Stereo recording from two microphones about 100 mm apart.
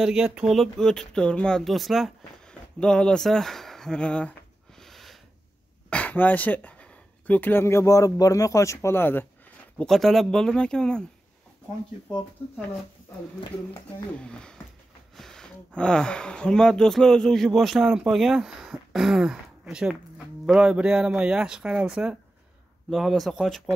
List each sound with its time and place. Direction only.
0.0 s speech: 5° right (ahead or behind); by 4.3 s 10° left (ahead or behind)
4.7 s snort: centre (ahead or behind)
5.9 s speech: 15° left (ahead or behind)
9.8 s speech: 5° left (ahead or behind)
14.2 s speech: 10° left (ahead or behind)